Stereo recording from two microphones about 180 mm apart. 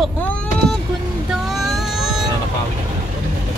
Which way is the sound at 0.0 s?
5° left (ahead or behind).